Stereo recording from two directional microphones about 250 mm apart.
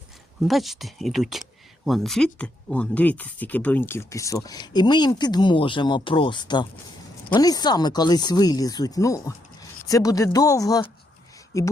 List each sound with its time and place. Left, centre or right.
0.4 s speech: centre